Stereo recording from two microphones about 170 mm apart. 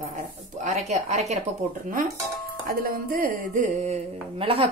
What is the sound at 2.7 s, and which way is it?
A woman's voice, 60° right (ahead or behind).